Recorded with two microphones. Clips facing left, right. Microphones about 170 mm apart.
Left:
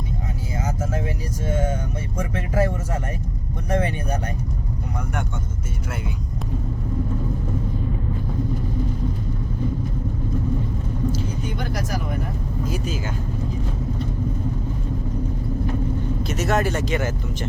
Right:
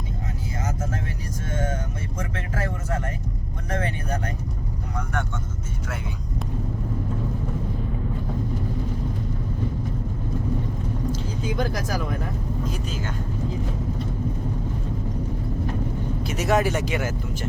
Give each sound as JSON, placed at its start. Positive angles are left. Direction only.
{"t": 1.5, "sound": "speech", "side_deg": 10}
{"t": 11.4, "sound": "speech", "side_deg": -90}
{"t": 12.6, "sound": "speech", "side_deg": 5}
{"t": 16.2, "sound": "speech", "side_deg": -10}